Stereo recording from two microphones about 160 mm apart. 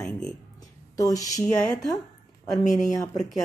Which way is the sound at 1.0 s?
20° left (ahead or behind).